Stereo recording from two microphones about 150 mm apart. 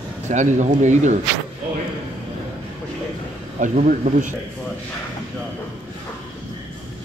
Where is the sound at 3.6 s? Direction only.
55° right (ahead or behind).